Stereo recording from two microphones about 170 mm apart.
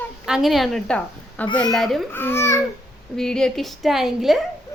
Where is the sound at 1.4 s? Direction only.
25° left (ahead or behind).